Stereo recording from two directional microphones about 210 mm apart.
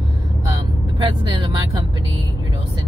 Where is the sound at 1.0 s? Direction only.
25° right (ahead or behind).